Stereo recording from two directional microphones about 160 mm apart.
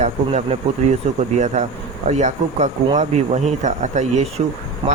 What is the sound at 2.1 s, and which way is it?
Speech, 45° right (ahead or behind).